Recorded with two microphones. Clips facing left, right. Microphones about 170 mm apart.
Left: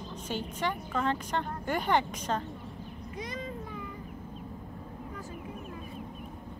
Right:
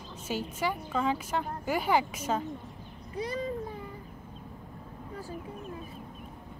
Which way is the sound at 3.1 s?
35° right (ahead or behind).